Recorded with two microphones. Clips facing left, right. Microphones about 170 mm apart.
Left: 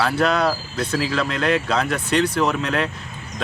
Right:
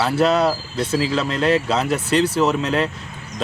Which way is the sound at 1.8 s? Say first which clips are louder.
Right 2 dB; 5° right (ahead or behind).